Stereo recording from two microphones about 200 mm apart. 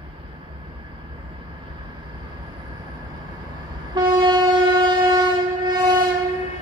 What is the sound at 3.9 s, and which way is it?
Train, 20° right (ahead or behind).